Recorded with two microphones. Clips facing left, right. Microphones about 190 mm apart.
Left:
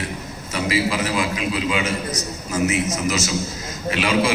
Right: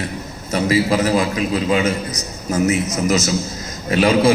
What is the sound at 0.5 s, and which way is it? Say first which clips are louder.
A man's voice: right 5 dB; 40° right (ahead or behind).